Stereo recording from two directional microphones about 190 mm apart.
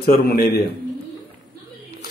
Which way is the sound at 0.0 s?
50° left (ahead or behind).